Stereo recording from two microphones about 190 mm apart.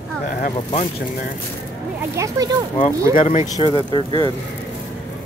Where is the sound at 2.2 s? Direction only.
20° right (ahead or behind).